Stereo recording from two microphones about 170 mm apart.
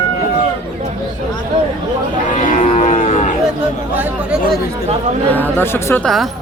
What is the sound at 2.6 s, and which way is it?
Cattle, 40° left (ahead or behind).